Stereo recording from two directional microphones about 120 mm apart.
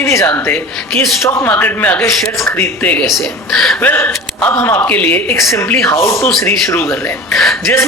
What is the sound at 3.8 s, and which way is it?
Speech, 15° left (ahead or behind).